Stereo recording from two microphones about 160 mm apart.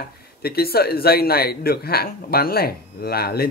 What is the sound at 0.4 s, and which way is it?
A man's voice, 75° left (ahead or behind).